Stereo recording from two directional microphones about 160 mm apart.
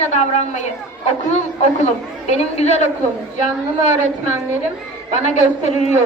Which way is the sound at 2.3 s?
45° left (ahead or behind).